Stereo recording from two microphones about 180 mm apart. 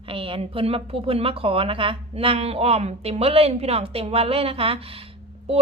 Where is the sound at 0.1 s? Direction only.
30° right (ahead or behind).